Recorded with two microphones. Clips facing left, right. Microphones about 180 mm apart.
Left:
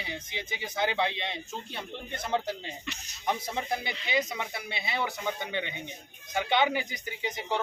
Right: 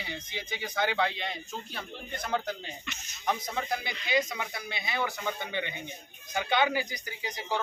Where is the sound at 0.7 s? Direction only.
25° left (ahead or behind).